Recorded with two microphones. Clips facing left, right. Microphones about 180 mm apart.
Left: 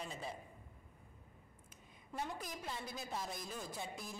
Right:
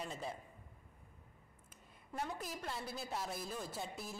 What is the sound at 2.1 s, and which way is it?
A woman's voice, centre (ahead or behind).